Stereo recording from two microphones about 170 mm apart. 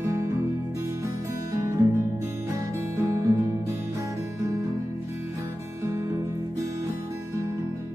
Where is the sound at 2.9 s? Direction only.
15° right (ahead or behind).